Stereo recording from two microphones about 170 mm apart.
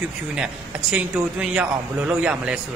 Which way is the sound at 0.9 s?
5° right (ahead or behind).